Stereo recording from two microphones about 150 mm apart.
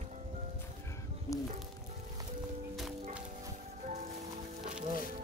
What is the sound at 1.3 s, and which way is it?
Speech, 20° left (ahead or behind).